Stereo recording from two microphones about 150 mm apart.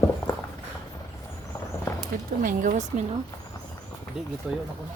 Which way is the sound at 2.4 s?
60° right (ahead or behind).